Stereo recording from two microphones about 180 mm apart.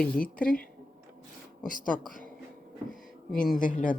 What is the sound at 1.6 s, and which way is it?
Speech, 50° left (ahead or behind).